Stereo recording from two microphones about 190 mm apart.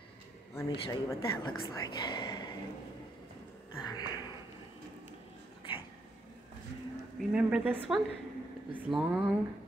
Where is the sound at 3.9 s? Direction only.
20° left (ahead or behind).